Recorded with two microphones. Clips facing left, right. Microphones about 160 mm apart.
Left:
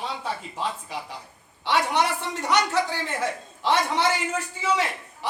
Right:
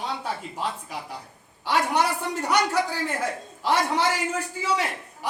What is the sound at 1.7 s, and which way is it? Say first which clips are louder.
A man's voice: even; 10° right (ahead or behind).